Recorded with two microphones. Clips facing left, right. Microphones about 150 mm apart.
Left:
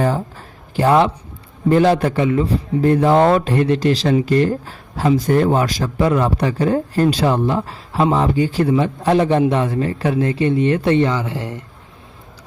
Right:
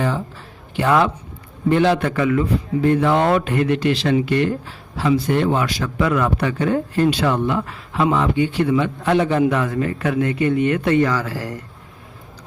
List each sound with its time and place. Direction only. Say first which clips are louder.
0.0 s a man's voice: left 3 dB; 40° left (ahead or behind); by 11.6 s 25° left (ahead or behind)